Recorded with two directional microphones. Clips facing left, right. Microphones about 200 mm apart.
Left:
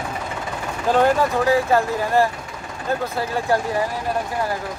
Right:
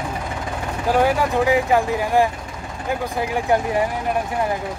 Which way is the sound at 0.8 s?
10° right (ahead or behind).